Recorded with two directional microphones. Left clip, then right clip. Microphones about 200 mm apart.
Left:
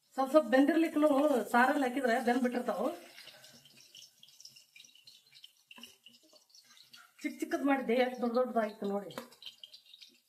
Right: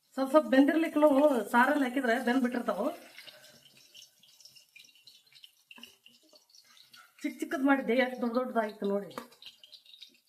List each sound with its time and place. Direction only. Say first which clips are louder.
0.1 s speech: right 1 dB; 35° right (ahead or behind)
7.2 s speech: right 2 dB; 35° right (ahead or behind)